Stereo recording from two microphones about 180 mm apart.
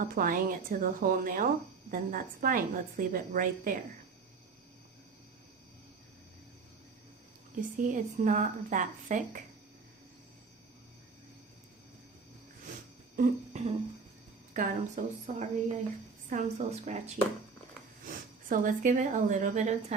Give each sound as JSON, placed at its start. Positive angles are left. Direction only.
{"t": 0.0, "sound": "a woman's voice", "side_deg": -50}
{"t": 7.8, "sound": "a woman's voice", "side_deg": -45}
{"t": 13.1, "sound": "a sound", "side_deg": -40}
{"t": 14.5, "sound": "a woman's voice", "side_deg": -45}
{"t": 18.0, "sound": "speech", "side_deg": -50}